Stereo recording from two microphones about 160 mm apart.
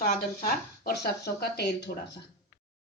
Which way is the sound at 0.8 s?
90° left.